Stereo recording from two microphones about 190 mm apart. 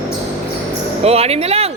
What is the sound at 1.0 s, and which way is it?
Speech, 30° right (ahead or behind).